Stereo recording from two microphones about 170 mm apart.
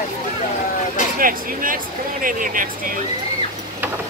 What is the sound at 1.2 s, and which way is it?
Speech, 55° right (ahead or behind).